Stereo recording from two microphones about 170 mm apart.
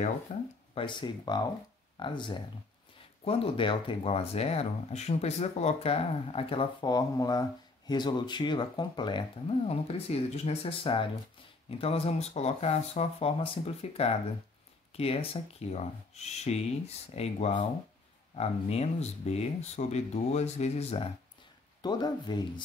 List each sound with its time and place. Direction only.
0.3 s speech: 45° left (ahead or behind)
0.7 s speech: 25° left (ahead or behind)
21.8 s speech: 25° left (ahead or behind)